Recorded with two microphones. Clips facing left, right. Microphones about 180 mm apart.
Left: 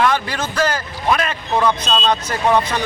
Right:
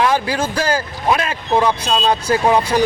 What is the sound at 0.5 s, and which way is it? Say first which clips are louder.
Speech: right 1 dB; 30° right (ahead or behind).